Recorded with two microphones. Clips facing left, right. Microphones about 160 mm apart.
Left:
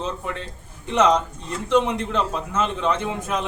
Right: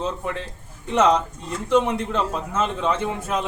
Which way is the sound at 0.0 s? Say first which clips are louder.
Right 2 dB; 5° right (ahead or behind).